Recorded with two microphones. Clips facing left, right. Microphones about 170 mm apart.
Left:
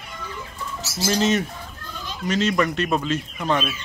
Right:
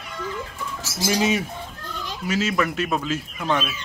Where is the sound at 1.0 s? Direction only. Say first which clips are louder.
Left 1 dB; 10° right (ahead or behind).